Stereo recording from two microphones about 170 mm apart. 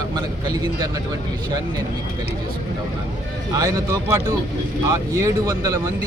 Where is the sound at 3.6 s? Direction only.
20° right (ahead or behind).